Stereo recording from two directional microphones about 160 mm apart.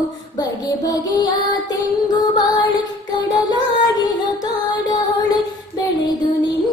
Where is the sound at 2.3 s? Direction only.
25° left (ahead or behind).